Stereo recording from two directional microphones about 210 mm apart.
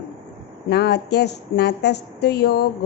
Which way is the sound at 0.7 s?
50° left (ahead or behind).